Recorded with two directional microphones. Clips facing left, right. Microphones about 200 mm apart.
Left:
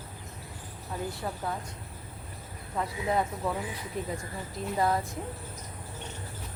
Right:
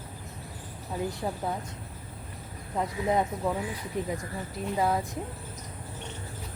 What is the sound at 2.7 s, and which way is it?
Speech, 20° right (ahead or behind).